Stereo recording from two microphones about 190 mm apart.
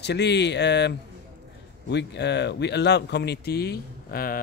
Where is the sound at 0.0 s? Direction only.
65° left (ahead or behind).